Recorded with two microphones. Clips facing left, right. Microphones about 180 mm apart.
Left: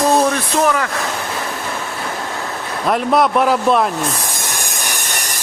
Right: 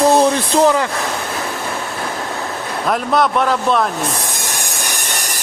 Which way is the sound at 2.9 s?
5° left (ahead or behind).